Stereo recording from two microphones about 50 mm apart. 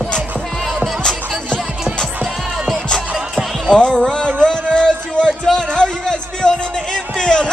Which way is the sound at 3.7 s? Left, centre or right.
Centre.